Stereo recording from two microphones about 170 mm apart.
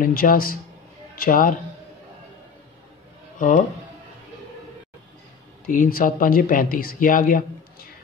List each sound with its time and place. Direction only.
0.0 s speech: 55° left (ahead or behind)
3.3 s speech: 45° left (ahead or behind)
5.7 s speech: 55° left (ahead or behind)